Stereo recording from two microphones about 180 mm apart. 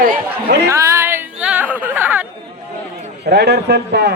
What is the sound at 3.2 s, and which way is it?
Speech, 70° right (ahead or behind).